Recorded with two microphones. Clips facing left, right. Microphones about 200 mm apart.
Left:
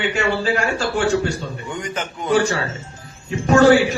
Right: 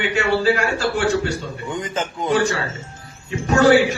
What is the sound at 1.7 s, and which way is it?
Speech, 20° right (ahead or behind).